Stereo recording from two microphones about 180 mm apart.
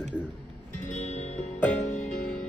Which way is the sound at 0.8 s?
40° left (ahead or behind).